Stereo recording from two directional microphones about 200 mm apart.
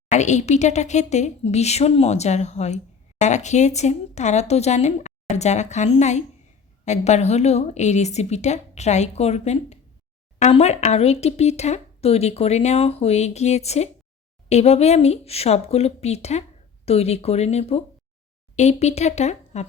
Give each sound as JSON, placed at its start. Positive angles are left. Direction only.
{"t": 0.1, "sound": "speech", "side_deg": 35}